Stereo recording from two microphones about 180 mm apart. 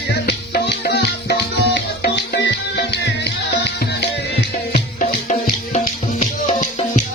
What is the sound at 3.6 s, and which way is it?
Music, 75° left (ahead or behind).